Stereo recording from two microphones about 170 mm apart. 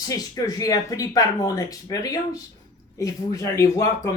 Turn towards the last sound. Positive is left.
turn(degrees=20)  # may be behind; listen again after turning